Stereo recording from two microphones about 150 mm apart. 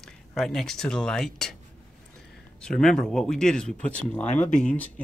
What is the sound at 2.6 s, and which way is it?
Speech, 5° left (ahead or behind).